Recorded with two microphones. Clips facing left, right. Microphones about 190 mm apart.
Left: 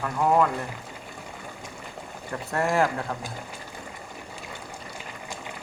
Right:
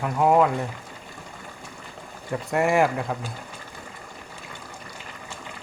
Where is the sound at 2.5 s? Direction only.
15° right (ahead or behind).